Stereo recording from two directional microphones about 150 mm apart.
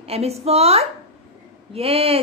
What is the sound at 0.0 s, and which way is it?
A woman's voice, 45° right (ahead or behind).